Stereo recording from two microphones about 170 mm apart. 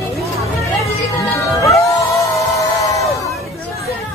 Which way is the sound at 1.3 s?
20° left (ahead or behind).